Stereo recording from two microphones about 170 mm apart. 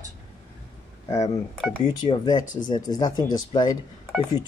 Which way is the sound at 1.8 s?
25° left (ahead or behind).